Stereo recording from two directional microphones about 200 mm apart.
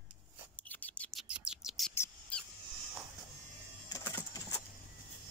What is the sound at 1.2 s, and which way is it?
Bird, 5° right (ahead or behind).